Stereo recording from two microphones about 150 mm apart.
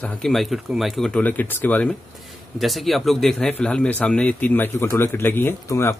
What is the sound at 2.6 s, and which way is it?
Speech, centre (ahead or behind).